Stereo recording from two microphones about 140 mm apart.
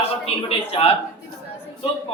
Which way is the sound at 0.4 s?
45° left (ahead or behind).